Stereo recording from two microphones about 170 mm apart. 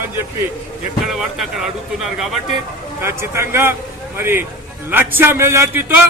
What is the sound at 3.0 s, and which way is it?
A man's voice, 15° right (ahead or behind).